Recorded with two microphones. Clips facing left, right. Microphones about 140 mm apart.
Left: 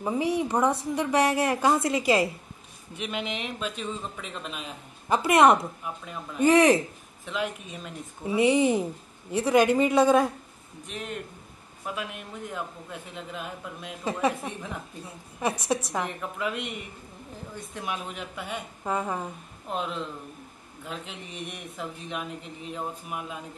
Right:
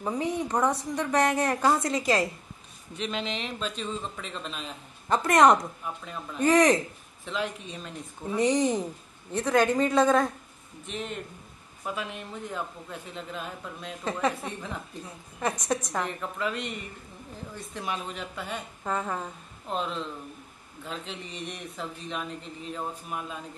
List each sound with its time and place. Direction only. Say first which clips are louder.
0.0 s a man's voice: left 3 dB; 10° left (ahead or behind)
6.4 s speech: left 2 dB; 30° left (ahead or behind)
7.2 s a man's voice: left 1 dB; 5° left (ahead or behind)
15.7 s a man's voice: left 1 dB; 5° left (ahead or behind)